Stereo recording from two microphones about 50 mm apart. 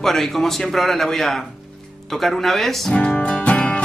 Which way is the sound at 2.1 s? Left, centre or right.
Centre.